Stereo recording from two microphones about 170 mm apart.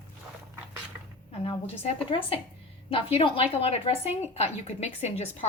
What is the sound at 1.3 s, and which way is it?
A woman's voice, 35° left (ahead or behind).